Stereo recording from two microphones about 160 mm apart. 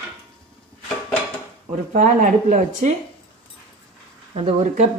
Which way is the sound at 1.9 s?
55° right (ahead or behind).